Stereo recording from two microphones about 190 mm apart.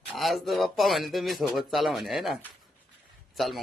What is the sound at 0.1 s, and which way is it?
Speech, centre (ahead or behind).